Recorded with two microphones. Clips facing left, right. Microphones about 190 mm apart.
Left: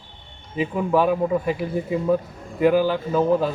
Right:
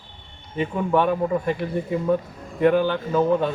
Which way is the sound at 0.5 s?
5° left (ahead or behind).